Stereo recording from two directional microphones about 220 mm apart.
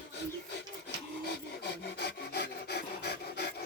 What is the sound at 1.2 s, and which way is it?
Filing, 50° left (ahead or behind).